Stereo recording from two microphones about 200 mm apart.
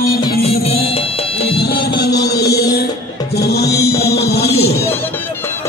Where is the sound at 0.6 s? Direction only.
30° left (ahead or behind).